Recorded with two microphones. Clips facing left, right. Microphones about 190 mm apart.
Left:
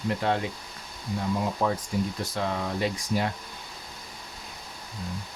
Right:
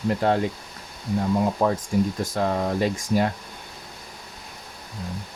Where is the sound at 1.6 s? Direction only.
45° right (ahead or behind).